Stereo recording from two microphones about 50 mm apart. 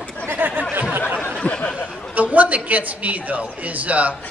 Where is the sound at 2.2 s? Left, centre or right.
Right.